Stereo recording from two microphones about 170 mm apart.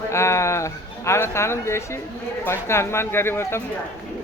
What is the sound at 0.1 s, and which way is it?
Speech, 15° left (ahead or behind).